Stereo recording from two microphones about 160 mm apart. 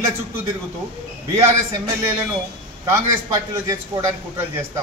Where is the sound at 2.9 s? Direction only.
20° right (ahead or behind).